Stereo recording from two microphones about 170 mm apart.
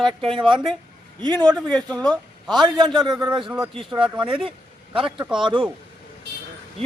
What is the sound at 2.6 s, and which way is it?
Speech, 30° right (ahead or behind).